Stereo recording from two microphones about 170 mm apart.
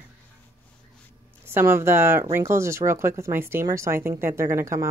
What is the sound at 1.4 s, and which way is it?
Speech, 15° right (ahead or behind).